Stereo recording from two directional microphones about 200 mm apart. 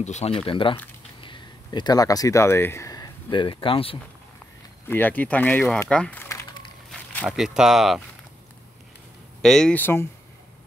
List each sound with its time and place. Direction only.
0.0 s speech: 35° left (ahead or behind)
4.8 s speech: 10° left (ahead or behind)
9.4 s speech: 5° left (ahead or behind)